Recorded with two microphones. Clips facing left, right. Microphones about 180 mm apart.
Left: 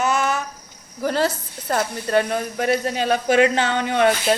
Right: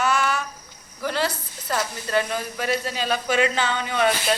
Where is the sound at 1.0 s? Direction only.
40° left (ahead or behind).